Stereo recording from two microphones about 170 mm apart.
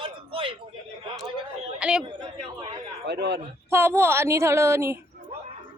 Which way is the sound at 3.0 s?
75° right (ahead or behind).